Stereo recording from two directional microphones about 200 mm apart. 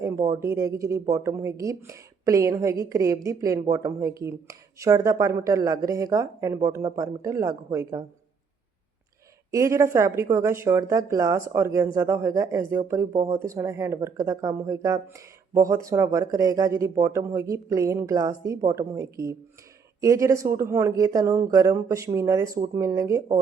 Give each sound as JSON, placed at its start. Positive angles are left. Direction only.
{"t": 0.0, "sound": "a woman's voice", "side_deg": -15}
{"t": 9.5, "sound": "a woman's voice", "side_deg": -15}